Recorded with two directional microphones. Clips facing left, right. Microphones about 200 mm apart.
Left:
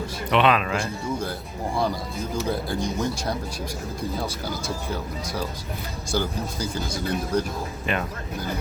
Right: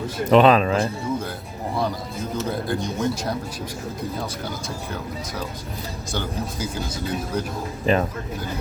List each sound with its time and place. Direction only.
0.3 s speech: 40° right (ahead or behind)
2.5 s speech: centre (ahead or behind)
4.9 s speech: centre (ahead or behind)
7.9 s speech: 35° right (ahead or behind)